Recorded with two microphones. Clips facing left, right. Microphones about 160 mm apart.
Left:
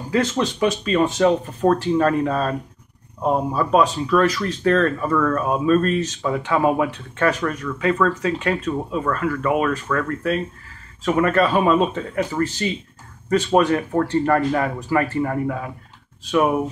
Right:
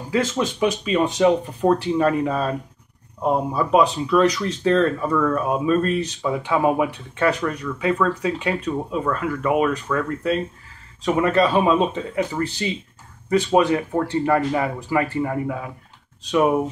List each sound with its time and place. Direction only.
0.1 s speech: 10° right (ahead or behind)